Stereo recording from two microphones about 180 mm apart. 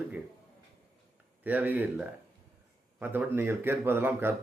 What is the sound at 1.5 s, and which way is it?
A man's voice, 10° right (ahead or behind).